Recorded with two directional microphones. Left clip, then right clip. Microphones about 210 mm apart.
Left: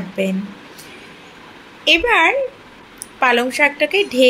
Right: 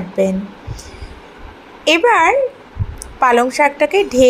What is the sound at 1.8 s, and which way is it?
A woman's voice, 10° right (ahead or behind).